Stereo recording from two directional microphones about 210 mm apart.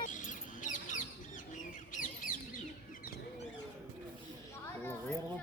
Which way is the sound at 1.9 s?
40° left (ahead or behind).